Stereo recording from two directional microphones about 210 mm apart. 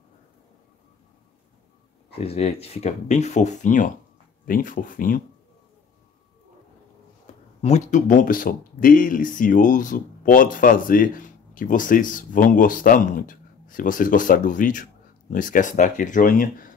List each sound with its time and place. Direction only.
2.1 s speech: 30° left (ahead or behind)
7.6 s speech: 35° left (ahead or behind)